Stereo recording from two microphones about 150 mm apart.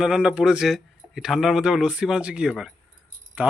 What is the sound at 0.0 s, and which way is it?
Speech, 5° right (ahead or behind).